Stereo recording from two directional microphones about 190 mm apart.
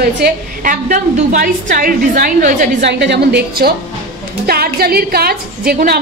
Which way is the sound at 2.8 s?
65° right (ahead or behind).